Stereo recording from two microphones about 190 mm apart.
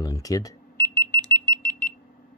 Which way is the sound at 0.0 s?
20° left (ahead or behind).